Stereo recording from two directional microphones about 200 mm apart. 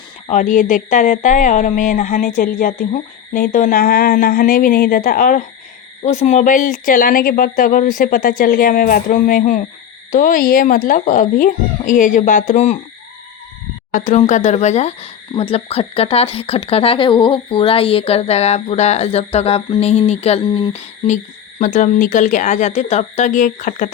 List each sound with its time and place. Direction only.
0.3 s speech: 40° left (ahead or behind)
13.9 s speech: 40° left (ahead or behind)